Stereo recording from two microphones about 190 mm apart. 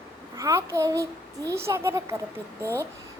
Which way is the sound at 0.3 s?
15° right (ahead or behind).